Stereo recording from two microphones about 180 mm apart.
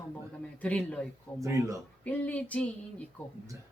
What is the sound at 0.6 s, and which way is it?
Speech, 5° left (ahead or behind).